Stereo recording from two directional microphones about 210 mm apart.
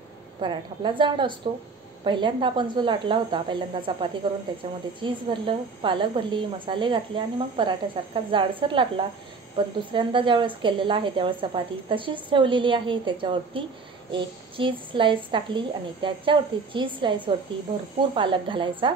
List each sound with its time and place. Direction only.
0.4 s speech: 20° right (ahead or behind)